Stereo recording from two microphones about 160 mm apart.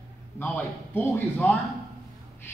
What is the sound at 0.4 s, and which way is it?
A man's voice, 10° left (ahead or behind).